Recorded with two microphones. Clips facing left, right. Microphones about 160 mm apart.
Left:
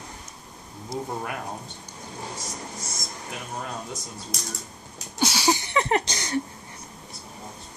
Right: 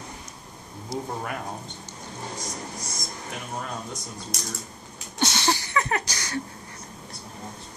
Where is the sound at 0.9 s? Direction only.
Centre (ahead or behind).